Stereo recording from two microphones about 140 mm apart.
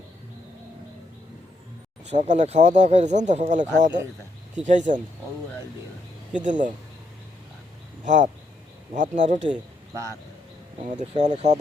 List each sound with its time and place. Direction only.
2.0 s speech: 55° right (ahead or behind)
6.4 s speech: 65° right (ahead or behind)
8.0 s speech: 60° right (ahead or behind)
11.1 s speech: 55° right (ahead or behind)